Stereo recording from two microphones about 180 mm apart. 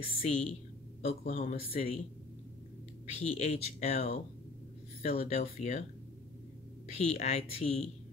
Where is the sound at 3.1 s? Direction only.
35° left (ahead or behind).